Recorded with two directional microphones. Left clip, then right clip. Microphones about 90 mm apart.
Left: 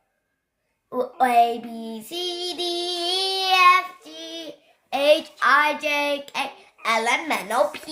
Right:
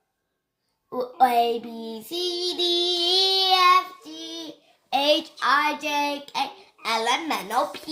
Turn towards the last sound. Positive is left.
turn(degrees=45)  # may be behind; listen again after turning